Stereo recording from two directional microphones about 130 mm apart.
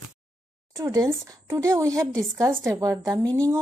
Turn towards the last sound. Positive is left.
turn(degrees=-30)  # may be behind; listen again after turning